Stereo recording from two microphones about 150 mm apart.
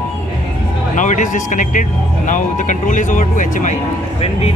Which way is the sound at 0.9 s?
60° left (ahead or behind).